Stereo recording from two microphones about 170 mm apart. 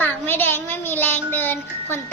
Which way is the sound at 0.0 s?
10° left (ahead or behind).